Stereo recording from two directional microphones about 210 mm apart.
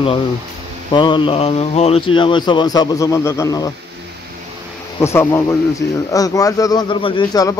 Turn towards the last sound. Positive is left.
turn(degrees=15)  # may be behind; listen again after turning